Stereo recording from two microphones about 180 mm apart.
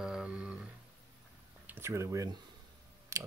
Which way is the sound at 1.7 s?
15° right (ahead or behind).